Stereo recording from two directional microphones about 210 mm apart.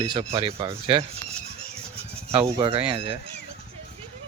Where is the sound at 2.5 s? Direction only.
25° right (ahead or behind).